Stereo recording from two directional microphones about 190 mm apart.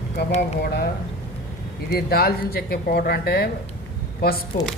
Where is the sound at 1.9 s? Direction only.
55° left (ahead or behind).